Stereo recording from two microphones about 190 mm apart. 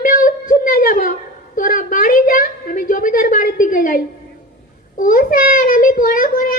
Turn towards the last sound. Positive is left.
turn(degrees=45)  # may be behind; listen again after turning